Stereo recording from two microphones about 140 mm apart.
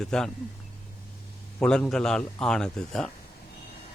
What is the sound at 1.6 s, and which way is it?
A man's voice, 5° left (ahead or behind).